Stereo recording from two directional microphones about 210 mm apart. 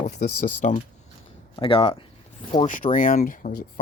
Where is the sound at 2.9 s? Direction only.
40° left (ahead or behind).